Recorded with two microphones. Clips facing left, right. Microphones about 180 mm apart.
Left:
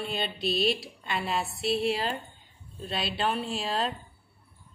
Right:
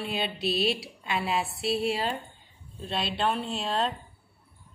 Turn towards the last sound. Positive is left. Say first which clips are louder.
# right 1 dB
turn(degrees=0)  # may be behind; listen again after turning